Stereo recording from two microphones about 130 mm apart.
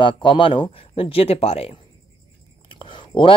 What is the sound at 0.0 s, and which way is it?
Speech, 40° left (ahead or behind).